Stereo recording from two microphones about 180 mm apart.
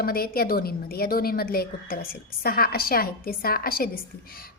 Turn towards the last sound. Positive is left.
turn(degrees=55)  # may be behind; listen again after turning